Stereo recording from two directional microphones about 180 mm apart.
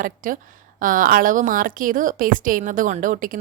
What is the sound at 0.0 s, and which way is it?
A woman's voice, 50° right (ahead or behind).